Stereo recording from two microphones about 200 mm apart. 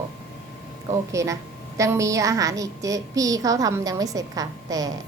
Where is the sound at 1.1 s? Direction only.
15° right (ahead or behind).